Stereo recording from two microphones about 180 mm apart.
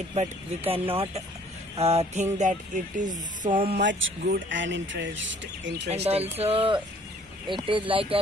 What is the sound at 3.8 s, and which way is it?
Speech, 70° right (ahead or behind).